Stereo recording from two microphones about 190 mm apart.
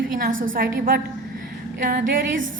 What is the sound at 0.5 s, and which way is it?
Speech, 50° right (ahead or behind).